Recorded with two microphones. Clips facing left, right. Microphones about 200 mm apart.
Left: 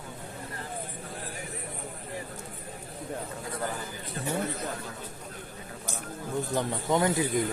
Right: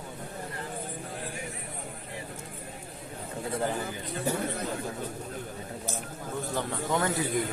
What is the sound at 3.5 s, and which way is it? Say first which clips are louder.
Speech: right 4 dB; 25° right (ahead or behind).